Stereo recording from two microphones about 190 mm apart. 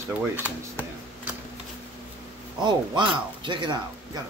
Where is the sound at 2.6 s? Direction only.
25° right (ahead or behind).